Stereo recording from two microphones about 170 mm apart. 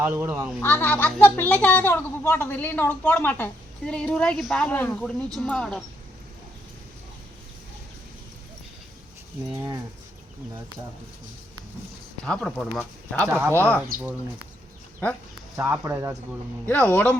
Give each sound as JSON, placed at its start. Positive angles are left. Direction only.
{"t": 0.0, "sound": "speech", "side_deg": -15}
{"t": 0.6, "sound": "speech", "side_deg": 10}
{"t": 12.2, "sound": "speech", "side_deg": 5}
{"t": 15.5, "sound": "speech", "side_deg": -15}
{"t": 16.6, "sound": "speech", "side_deg": 10}